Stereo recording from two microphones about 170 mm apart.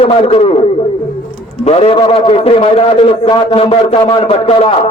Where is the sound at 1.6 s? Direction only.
35° left (ahead or behind).